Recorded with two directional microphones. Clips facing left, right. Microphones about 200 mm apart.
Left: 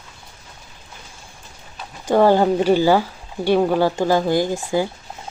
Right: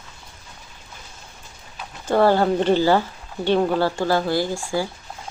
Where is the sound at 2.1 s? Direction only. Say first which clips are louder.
Left 3 dB; 15° left (ahead or behind).